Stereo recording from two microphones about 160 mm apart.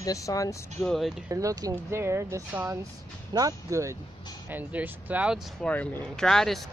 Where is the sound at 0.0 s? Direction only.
20° left (ahead or behind).